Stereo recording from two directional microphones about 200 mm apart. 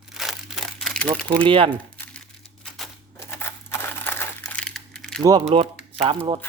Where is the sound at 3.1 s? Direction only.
15° left (ahead or behind).